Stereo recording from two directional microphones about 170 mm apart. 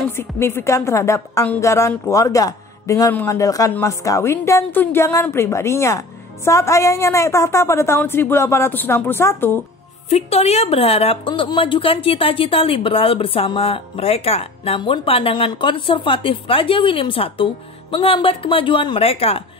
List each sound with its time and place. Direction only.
0.1 s a woman's voice: 15° left (ahead or behind)
10.0 s a woman's voice: 40° left (ahead or behind)